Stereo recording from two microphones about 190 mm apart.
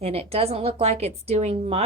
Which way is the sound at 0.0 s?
35° right (ahead or behind).